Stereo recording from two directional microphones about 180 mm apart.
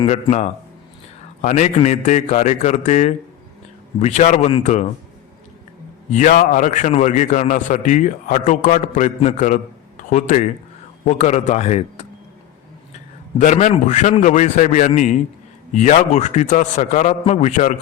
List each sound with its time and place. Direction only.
0.0 s a man's voice: 35° left (ahead or behind)
6.1 s a man's voice: 45° left (ahead or behind)
13.4 s a man's voice: 45° left (ahead or behind)